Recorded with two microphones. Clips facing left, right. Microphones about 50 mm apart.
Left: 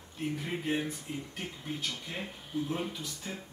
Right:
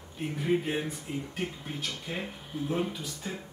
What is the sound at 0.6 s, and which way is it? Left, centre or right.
Speech, centre.